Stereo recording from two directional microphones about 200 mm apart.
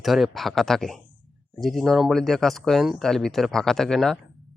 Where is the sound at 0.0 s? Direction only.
Centre (ahead or behind).